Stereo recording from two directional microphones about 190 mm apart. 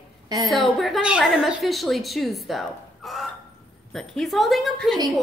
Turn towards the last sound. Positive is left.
turn(degrees=0)  # may be behind; listen again after turning